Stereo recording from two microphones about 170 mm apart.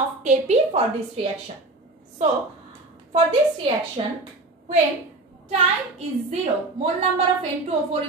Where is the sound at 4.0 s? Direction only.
30° right (ahead or behind).